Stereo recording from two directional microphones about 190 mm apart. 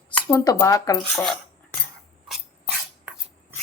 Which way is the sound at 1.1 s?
Centre (ahead or behind).